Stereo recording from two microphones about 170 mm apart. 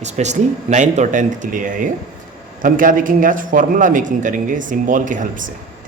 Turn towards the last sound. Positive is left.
turn(degrees=-50)  # may be behind; listen again after turning